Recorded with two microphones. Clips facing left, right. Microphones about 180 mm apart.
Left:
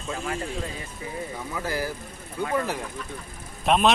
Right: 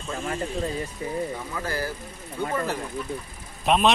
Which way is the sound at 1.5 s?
15° left (ahead or behind).